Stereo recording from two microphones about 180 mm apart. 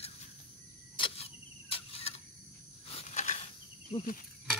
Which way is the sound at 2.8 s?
35° left (ahead or behind).